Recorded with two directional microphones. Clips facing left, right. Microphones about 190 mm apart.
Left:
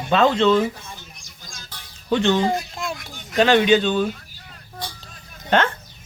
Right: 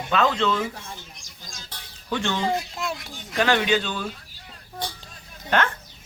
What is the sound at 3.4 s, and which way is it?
Speech, 25° left (ahead or behind).